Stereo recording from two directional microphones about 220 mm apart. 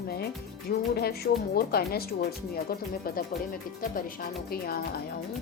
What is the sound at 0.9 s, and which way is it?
Speech, 45° left (ahead or behind).